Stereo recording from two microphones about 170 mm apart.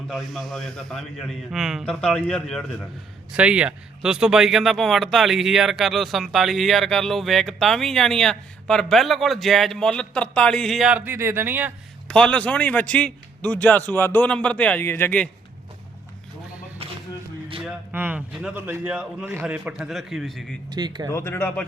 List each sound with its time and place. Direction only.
0.1 s speech: centre (ahead or behind)
12.0 s a man's voice: 5° left (ahead or behind)
17.6 s a man's voice: 10° right (ahead or behind)
20.7 s speech: 25° right (ahead or behind)
21.1 s a man's voice: 15° left (ahead or behind)